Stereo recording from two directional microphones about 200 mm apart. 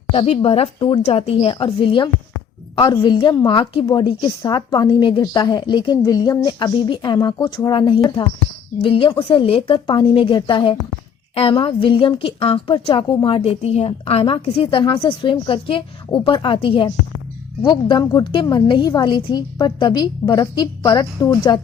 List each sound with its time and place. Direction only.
0.1 s a woman's voice: 30° left (ahead or behind)